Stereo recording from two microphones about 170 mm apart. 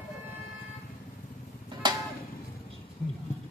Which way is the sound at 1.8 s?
25° right (ahead or behind).